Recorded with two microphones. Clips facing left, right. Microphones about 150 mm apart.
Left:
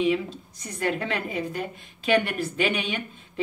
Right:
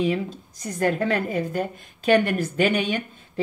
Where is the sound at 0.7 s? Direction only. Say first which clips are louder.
Right 5 dB; 40° right (ahead or behind).